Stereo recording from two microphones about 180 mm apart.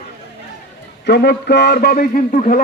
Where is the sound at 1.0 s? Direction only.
70° left (ahead or behind); by 2.6 s 50° left (ahead or behind).